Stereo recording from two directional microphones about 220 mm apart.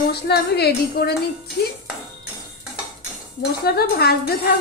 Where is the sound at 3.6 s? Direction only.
45° left (ahead or behind).